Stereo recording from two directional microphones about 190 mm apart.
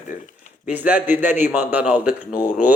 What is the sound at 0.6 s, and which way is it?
Speech, 10° right (ahead or behind).